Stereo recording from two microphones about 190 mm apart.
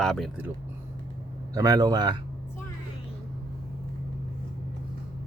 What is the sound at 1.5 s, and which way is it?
Speech, 20° right (ahead or behind).